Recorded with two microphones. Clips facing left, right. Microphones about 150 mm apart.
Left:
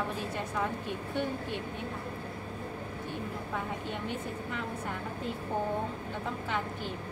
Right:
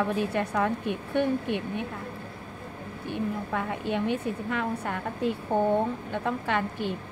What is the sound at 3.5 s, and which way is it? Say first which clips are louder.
A woman's voice: right 7 dB; 70° right (ahead or behind).